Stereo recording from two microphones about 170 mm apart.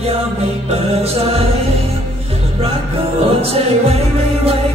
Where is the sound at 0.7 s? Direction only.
35° right (ahead or behind).